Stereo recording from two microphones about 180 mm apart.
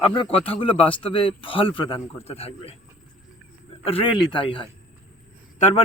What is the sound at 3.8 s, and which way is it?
A man's voice, 30° left (ahead or behind).